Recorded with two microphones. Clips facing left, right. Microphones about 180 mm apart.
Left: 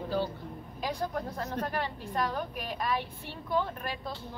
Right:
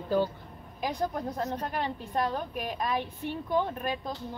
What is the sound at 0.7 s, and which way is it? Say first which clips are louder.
A woman's voice: right 2 dB; 20° right (ahead or behind).